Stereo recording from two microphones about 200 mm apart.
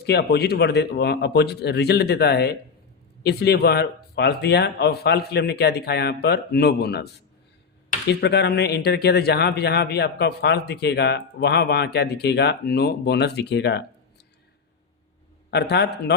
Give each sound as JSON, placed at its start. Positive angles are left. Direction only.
{"t": 0.0, "sound": "a man's voice", "side_deg": 55}
{"t": 8.2, "sound": "a man's voice", "side_deg": 55}
{"t": 15.4, "sound": "a man's voice", "side_deg": 55}